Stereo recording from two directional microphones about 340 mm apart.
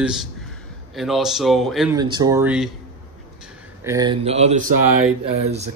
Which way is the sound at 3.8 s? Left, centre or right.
Centre.